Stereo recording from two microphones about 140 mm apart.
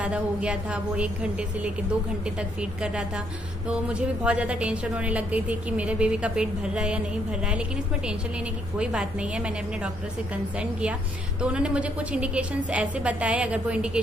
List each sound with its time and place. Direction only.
0.0 s a woman's voice: 10° right (ahead or behind)
3.6 s a woman's voice: 5° right (ahead or behind)
8.7 s a woman's voice: 5° right (ahead or behind)